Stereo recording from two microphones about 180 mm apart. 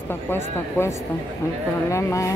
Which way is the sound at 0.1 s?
15° left (ahead or behind).